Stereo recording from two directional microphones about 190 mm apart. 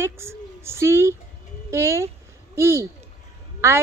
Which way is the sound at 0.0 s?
15° right (ahead or behind).